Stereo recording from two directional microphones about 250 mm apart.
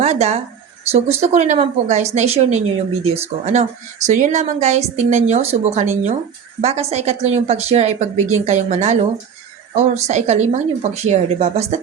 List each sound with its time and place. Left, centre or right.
0.0 s speech: right